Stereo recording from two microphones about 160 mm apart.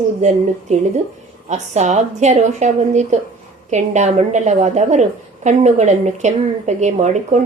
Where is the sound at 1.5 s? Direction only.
45° right (ahead or behind).